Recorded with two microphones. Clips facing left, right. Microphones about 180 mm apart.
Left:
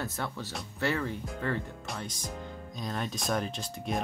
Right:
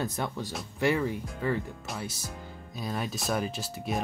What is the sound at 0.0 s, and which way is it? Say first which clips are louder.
Speech: right 4 dB; 15° right (ahead or behind).